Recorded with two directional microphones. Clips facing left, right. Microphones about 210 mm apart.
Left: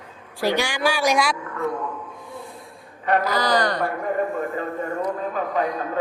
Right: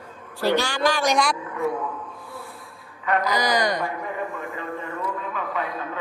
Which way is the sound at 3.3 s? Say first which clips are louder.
Left 1 dB; 15° right (ahead or behind).